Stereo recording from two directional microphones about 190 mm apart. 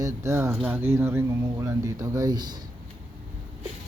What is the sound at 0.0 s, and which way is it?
Speech, 15° right (ahead or behind).